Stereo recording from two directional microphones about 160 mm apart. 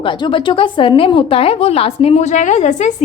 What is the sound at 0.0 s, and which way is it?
A woman's voice, 30° left (ahead or behind).